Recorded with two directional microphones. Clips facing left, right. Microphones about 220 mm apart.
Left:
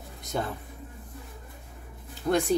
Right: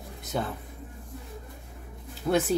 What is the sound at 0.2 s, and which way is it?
Insect, centre (ahead or behind).